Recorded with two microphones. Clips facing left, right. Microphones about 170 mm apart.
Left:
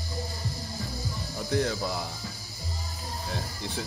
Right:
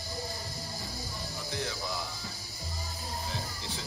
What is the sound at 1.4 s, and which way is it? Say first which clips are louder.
Speech: left 10 dB; 55° left (ahead or behind).